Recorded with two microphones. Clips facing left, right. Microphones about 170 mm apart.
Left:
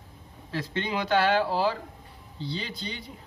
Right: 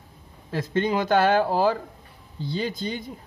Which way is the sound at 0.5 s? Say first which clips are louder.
Right 7 dB; 45° right (ahead or behind).